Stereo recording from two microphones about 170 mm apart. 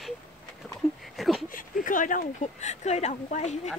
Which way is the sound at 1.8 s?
50° left (ahead or behind).